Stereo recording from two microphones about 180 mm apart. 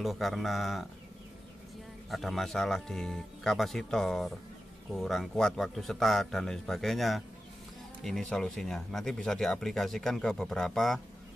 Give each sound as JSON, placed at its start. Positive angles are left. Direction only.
{"t": 0.0, "sound": "speech", "side_deg": 0}
{"t": 2.0, "sound": "speech", "side_deg": 0}